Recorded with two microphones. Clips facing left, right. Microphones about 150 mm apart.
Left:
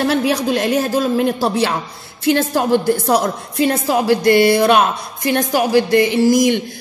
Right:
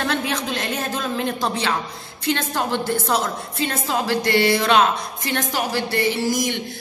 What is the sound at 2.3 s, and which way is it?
A woman's voice, 40° left (ahead or behind).